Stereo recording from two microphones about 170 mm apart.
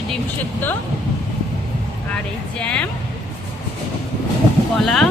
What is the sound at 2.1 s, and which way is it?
Speech, 5° left (ahead or behind).